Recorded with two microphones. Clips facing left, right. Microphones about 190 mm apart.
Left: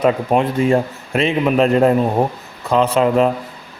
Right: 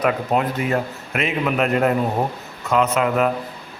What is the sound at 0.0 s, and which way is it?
A man's voice, 25° left (ahead or behind).